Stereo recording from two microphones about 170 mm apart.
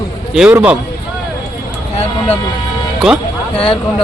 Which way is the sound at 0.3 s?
5° right (ahead or behind).